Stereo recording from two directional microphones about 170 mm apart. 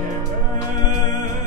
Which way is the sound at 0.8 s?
45° right (ahead or behind).